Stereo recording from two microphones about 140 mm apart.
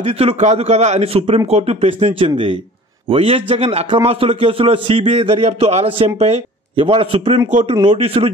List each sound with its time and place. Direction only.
0.0 s a man's voice: 45° right (ahead or behind)